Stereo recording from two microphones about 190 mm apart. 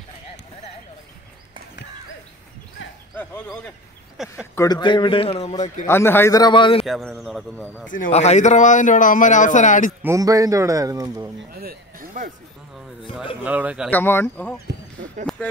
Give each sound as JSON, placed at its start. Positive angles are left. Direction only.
{"t": 4.2, "sound": "speech", "side_deg": 0}
{"t": 4.6, "sound": "a man's voice", "side_deg": 20}
{"t": 5.9, "sound": "a man's voice", "side_deg": 10}
{"t": 6.9, "sound": "speech", "side_deg": 0}
{"t": 7.9, "sound": "speech", "side_deg": 40}
{"t": 10.0, "sound": "speech", "side_deg": -15}
{"t": 11.6, "sound": "speech", "side_deg": -45}
{"t": 13.4, "sound": "speech", "side_deg": -10}
{"t": 13.8, "sound": "speech", "side_deg": 10}